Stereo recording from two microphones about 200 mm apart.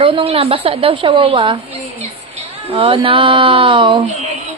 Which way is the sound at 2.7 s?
25° right (ahead or behind).